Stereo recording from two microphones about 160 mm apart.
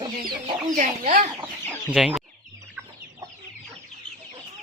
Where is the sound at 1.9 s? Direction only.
5° right (ahead or behind).